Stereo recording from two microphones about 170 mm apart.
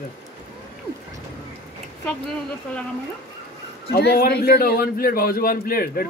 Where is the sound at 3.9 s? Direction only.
70° left (ahead or behind).